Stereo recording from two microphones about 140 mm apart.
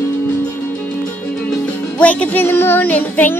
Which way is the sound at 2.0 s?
10° left (ahead or behind).